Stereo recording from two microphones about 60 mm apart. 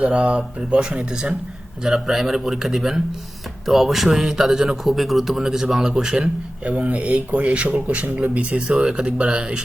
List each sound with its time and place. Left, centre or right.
0.0 s a man's voice: centre